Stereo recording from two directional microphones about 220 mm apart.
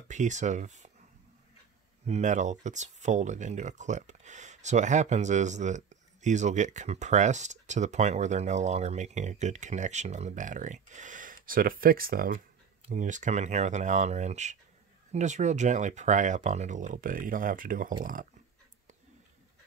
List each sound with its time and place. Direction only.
0.1 s speech: 35° right (ahead or behind)
2.0 s speech: 30° right (ahead or behind)